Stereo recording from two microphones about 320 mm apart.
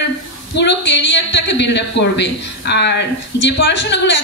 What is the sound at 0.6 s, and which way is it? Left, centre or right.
A woman's voice, left.